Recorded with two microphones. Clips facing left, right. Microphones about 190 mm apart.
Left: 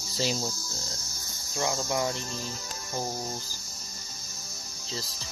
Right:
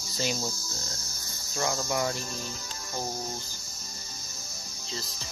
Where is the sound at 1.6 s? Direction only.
15° left (ahead or behind).